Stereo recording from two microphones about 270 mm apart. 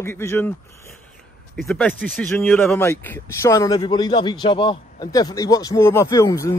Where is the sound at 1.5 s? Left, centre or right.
Centre.